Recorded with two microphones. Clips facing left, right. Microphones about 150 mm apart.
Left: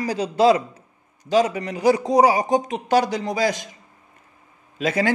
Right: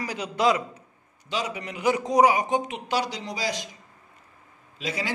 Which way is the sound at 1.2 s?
45° left (ahead or behind).